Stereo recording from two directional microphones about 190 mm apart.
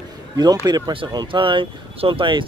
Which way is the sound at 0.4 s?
20° right (ahead or behind).